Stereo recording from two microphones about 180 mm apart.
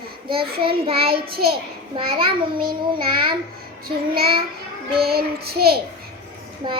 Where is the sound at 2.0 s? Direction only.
30° right (ahead or behind).